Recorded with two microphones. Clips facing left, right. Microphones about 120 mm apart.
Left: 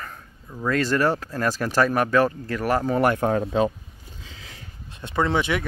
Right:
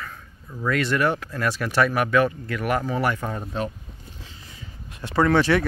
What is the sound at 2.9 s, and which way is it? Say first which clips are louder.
Speech: left 5 dB; 50° left (ahead or behind).